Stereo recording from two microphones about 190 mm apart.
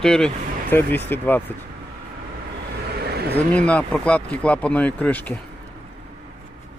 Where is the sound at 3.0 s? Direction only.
55° right (ahead or behind).